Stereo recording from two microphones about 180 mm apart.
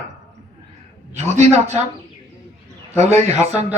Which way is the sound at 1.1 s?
40° right (ahead or behind).